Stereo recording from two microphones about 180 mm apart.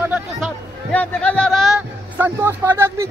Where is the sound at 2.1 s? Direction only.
10° right (ahead or behind).